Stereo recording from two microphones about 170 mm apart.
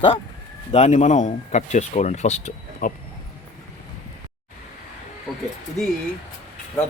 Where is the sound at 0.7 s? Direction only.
40° left (ahead or behind).